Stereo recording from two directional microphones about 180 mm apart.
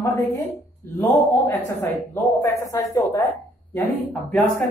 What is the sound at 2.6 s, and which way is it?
Speech, 20° left (ahead or behind).